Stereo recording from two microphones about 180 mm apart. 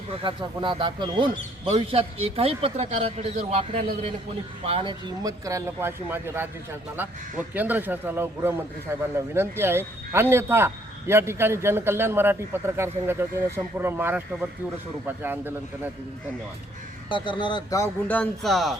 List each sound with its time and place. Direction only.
0.2 s a man's voice: 25° right (ahead or behind)
17.1 s speech: 25° left (ahead or behind); by 18.8 s centre (ahead or behind)